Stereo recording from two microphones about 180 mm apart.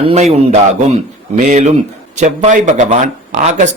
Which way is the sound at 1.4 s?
40° right (ahead or behind).